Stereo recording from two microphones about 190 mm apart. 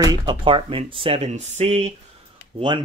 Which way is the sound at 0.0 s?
20° right (ahead or behind).